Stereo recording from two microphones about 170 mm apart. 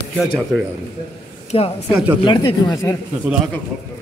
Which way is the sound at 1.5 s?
35° left (ahead or behind).